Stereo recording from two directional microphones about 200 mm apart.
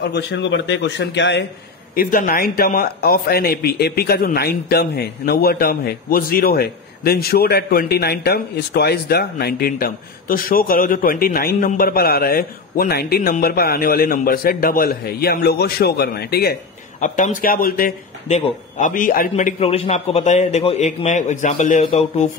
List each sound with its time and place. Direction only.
0.0 s a man's voice: 60° left (ahead or behind)
2.0 s speech: 45° left (ahead or behind)
17.0 s a man's voice: 40° left (ahead or behind)